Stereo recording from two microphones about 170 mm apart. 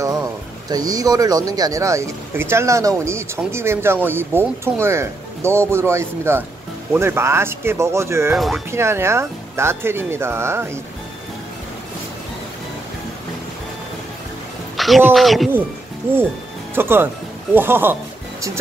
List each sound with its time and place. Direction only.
0.7 s speech: 20° right (ahead or behind)
8.4 s speech: centre (ahead or behind)
8.6 s speech: 15° right (ahead or behind)
14.8 s music: centre (ahead or behind)
15.1 s speech: centre (ahead or behind)
16.7 s speech: 15° right (ahead or behind)